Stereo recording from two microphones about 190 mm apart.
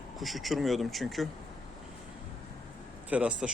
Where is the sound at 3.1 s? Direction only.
5° right (ahead or behind).